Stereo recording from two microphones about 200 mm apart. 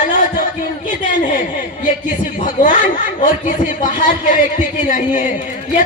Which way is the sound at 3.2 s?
40° left (ahead or behind).